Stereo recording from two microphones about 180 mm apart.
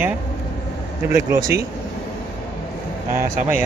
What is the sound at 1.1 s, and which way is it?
Speech, 15° right (ahead or behind).